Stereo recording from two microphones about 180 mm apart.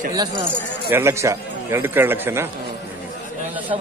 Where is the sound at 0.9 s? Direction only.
15° right (ahead or behind).